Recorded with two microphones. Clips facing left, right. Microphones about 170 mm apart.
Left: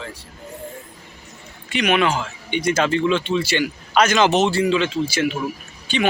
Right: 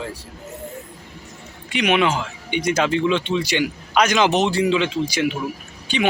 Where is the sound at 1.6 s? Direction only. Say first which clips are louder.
Even; 15° right (ahead or behind).